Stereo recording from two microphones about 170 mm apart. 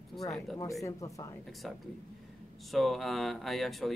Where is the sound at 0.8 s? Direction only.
20° left (ahead or behind).